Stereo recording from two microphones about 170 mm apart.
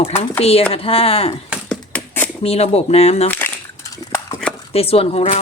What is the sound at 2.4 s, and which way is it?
Speech, 35° left (ahead or behind).